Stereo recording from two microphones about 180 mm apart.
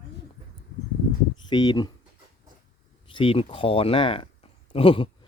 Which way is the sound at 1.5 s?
25° left (ahead or behind).